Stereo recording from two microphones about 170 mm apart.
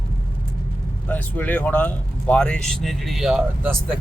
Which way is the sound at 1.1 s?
10° left (ahead or behind).